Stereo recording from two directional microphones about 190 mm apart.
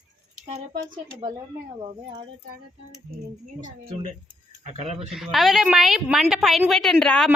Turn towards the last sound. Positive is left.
turn(degrees=5)  # may be behind; listen again after turning